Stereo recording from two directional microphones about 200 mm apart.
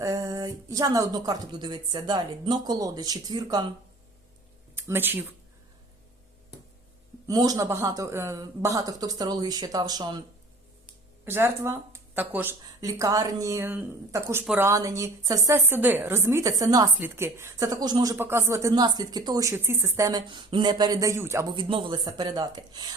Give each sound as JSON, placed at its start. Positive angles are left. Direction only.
{"t": 0.0, "sound": "speech", "side_deg": -15}
{"t": 4.7, "sound": "speech", "side_deg": -10}
{"t": 7.3, "sound": "speech", "side_deg": -20}
{"t": 11.3, "sound": "a woman's voice", "side_deg": -10}
{"t": 21.5, "sound": "speech", "side_deg": -25}